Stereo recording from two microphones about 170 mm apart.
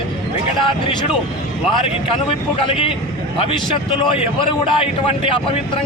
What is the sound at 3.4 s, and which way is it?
A man's voice, 30° left (ahead or behind).